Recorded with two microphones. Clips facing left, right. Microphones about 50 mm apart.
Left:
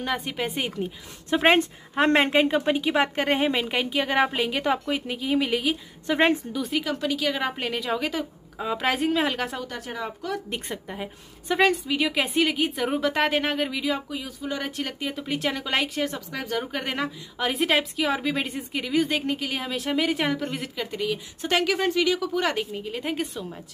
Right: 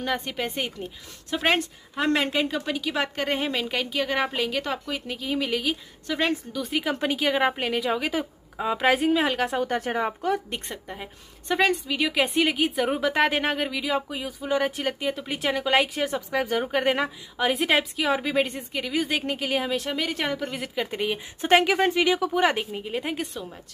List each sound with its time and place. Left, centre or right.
0.0 s a woman's voice: centre
1.3 s speech: left
2.0 s a woman's voice: left; by 5.8 s centre
6.0 s speech: left
6.8 s speech: right
7.5 s a woman's voice: centre
9.7 s speech: right
10.5 s a woman's voice: centre
20.8 s speech: right
23.1 s a woman's voice: centre